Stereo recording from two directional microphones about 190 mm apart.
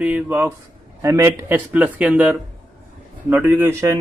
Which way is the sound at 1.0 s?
15° right (ahead or behind).